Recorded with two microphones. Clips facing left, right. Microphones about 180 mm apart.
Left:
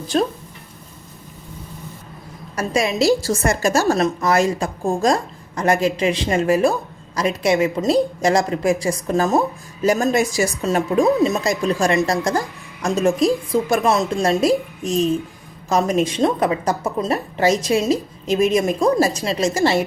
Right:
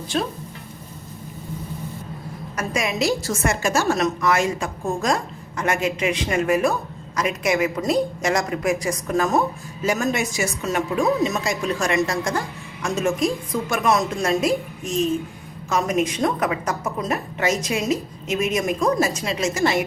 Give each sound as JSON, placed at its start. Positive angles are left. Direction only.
{"t": 0.1, "sound": "a woman's voice", "side_deg": 40}
{"t": 2.6, "sound": "a woman's voice", "side_deg": 30}